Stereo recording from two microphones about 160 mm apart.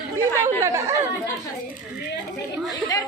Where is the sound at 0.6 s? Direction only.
15° right (ahead or behind).